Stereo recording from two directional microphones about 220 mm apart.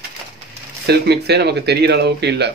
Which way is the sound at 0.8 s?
50° right (ahead or behind).